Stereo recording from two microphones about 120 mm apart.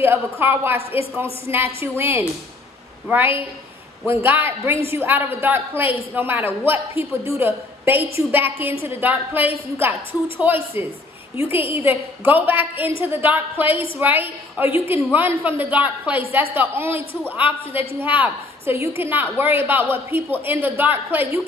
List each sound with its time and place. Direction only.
0.0 s a woman's voice: 20° right (ahead or behind)
11.3 s a woman's voice: 50° left (ahead or behind)
11.6 s a woman's voice: 20° right (ahead or behind)